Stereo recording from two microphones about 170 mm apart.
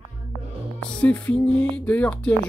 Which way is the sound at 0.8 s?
5° left (ahead or behind).